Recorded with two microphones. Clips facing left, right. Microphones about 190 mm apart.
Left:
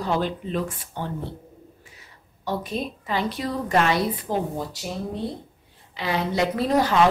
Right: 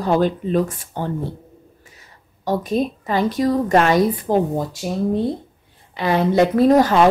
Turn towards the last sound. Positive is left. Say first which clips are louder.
# right 7 dB
turn(degrees=-45)  # may be behind; listen again after turning